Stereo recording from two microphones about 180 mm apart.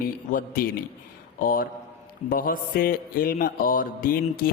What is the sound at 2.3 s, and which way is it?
Mantra, 50° left (ahead or behind).